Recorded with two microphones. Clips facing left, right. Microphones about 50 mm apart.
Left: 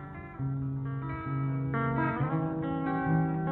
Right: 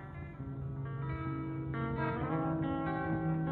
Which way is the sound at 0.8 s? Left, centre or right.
Centre.